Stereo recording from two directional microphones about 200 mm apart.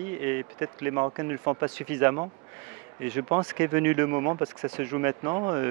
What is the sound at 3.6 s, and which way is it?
Speech, 10° right (ahead or behind).